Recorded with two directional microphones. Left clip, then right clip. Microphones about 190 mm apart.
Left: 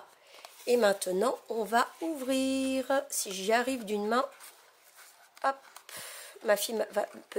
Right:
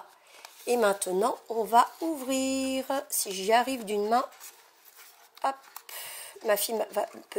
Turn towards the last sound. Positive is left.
turn(degrees=15)  # may be behind; listen again after turning